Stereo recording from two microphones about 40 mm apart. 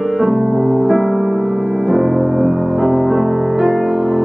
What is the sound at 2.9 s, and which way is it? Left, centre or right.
Music, centre.